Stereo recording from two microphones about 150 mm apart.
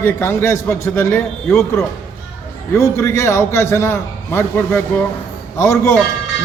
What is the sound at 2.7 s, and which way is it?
A man's voice, 20° left (ahead or behind).